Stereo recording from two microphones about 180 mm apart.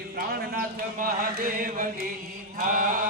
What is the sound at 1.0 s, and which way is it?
Chant, 50° right (ahead or behind).